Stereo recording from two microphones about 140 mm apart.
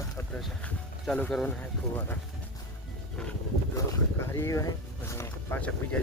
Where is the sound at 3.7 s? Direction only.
20° left (ahead or behind).